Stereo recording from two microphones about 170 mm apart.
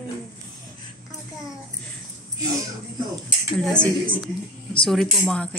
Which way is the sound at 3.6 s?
5° left (ahead or behind).